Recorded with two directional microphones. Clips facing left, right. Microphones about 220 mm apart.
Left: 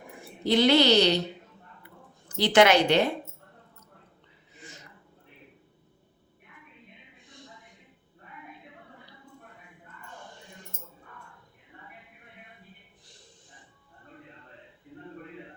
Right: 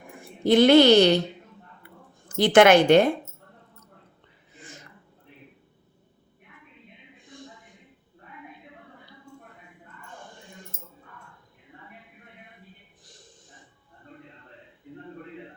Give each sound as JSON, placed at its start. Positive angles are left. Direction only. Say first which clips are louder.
{"t": 0.2, "sound": "a woman's voice", "louder": "right 5 dB", "side_deg": -50}
{"t": 2.3, "sound": "a woman's voice", "louder": "right 4 dB", "side_deg": -50}